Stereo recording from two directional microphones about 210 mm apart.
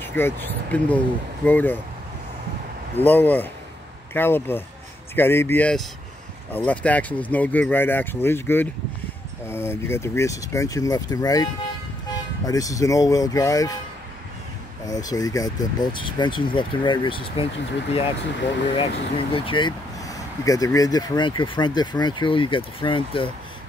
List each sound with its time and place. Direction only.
0.0 s speech: 10° left (ahead or behind)
3.0 s speech: 10° left (ahead or behind)
14.9 s speech: 15° left (ahead or behind)
18.8 s speech: 25° left (ahead or behind)